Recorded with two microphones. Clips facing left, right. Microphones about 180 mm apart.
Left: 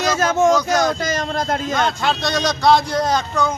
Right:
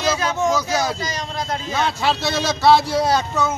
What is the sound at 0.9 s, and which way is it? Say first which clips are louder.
Speech: left 5 dB; 50° left (ahead or behind).